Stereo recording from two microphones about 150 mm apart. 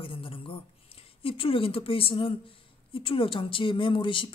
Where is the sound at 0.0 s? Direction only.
35° left (ahead or behind).